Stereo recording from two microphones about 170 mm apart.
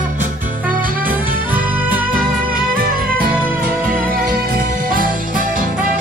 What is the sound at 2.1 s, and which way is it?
Music, 55° right (ahead or behind).